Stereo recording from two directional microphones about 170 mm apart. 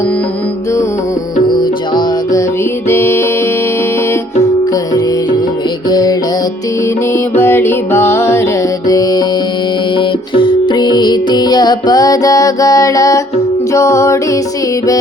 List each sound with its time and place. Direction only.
1.5 s music: 25° left (ahead or behind)
2.9 s music: 15° left (ahead or behind)
5.9 s music: 20° left (ahead or behind)